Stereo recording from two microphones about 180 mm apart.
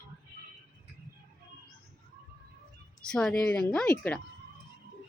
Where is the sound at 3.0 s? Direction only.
5° left (ahead or behind).